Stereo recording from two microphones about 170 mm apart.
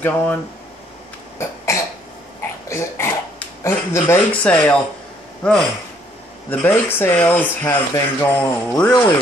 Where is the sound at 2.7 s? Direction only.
15° left (ahead or behind).